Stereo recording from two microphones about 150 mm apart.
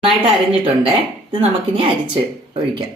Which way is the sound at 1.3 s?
40° right (ahead or behind).